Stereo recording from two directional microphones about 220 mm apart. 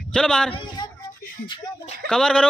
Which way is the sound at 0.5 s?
20° left (ahead or behind).